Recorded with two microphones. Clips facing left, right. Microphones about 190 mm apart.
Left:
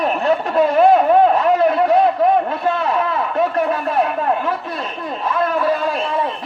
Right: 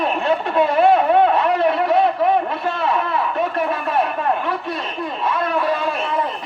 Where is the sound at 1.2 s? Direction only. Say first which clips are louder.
Left 2 dB; 40° left (ahead or behind).